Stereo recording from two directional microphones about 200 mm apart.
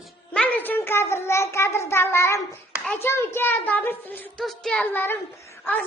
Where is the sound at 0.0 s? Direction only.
5° left (ahead or behind).